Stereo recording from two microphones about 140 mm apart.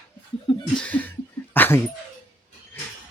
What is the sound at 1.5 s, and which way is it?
Dog, 15° left (ahead or behind).